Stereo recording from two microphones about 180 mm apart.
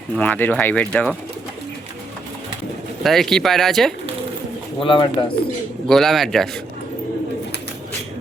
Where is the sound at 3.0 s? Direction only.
Centre (ahead or behind).